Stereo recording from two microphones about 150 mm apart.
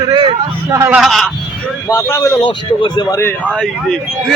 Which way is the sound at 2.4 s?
35° left (ahead or behind).